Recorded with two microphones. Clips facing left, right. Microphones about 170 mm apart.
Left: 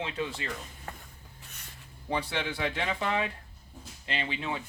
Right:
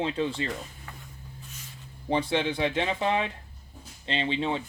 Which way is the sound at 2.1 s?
25° right (ahead or behind).